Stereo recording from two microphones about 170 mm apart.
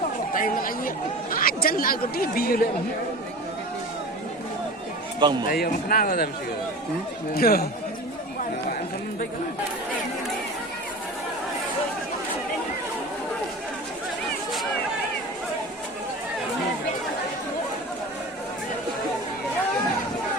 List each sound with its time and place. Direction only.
0.3 s speech: 55° left (ahead or behind)
5.5 s speech: 60° left (ahead or behind)
7.3 s speech: 60° left (ahead or behind)